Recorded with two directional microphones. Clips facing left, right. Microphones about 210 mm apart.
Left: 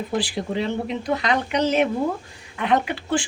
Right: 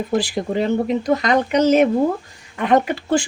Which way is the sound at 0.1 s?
45° right (ahead or behind).